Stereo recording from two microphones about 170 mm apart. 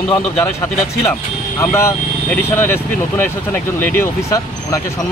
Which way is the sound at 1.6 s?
15° left (ahead or behind).